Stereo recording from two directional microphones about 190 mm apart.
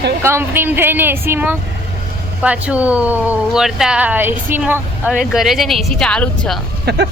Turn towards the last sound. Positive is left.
turn(degrees=-60)  # may be behind; listen again after turning